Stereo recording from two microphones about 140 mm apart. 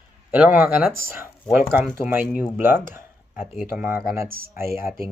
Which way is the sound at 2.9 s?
15° right (ahead or behind).